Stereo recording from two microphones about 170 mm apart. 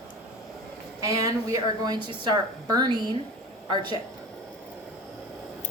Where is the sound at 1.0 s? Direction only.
20° right (ahead or behind).